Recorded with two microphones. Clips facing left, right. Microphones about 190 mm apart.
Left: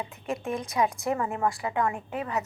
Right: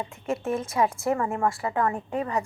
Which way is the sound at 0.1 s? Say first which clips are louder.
Right 3 dB; 15° left (ahead or behind).